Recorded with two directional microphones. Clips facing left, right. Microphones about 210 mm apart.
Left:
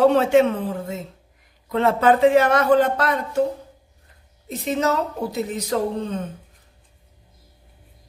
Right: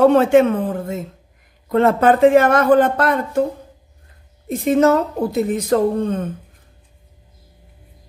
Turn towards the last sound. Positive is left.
turn(degrees=-50)  # may be behind; listen again after turning